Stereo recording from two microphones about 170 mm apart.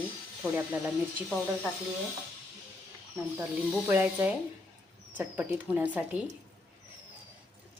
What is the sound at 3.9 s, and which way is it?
A woman's voice, 10° right (ahead or behind).